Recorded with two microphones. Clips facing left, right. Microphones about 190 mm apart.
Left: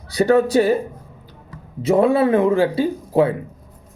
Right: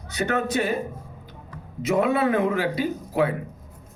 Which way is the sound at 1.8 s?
30° left (ahead or behind).